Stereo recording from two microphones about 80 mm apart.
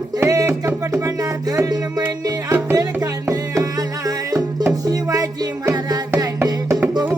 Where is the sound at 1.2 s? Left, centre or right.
Right.